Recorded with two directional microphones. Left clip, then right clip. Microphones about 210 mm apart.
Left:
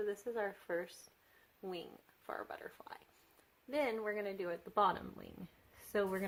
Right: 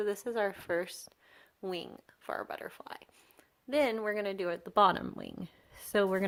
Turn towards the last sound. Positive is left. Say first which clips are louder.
# right 8 dB
turn(degrees=-40)  # may be behind; listen again after turning